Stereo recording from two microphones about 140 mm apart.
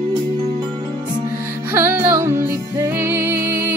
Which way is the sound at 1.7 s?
15° right (ahead or behind).